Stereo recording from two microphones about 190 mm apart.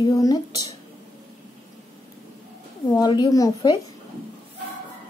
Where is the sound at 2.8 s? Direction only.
20° left (ahead or behind).